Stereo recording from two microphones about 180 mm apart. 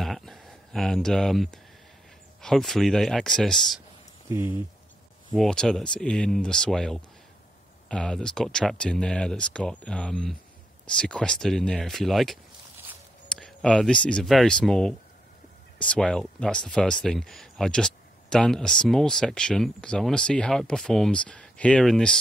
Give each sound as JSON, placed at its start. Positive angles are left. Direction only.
{"t": 0.0, "sound": "a sound", "side_deg": 0}
{"t": 2.4, "sound": "speech", "side_deg": 0}
{"t": 5.3, "sound": "speech", "side_deg": 0}